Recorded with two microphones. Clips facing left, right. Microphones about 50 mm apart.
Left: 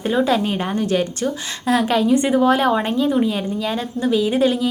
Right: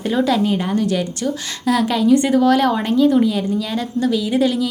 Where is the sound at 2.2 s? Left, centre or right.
Left.